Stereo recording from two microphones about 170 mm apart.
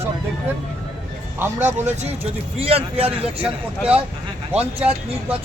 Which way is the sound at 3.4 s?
10° right (ahead or behind).